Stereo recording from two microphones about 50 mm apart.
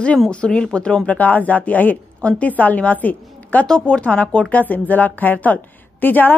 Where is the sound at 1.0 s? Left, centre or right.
Left.